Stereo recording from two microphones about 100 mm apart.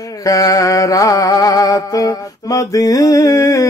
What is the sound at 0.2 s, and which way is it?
Music, 35° left (ahead or behind).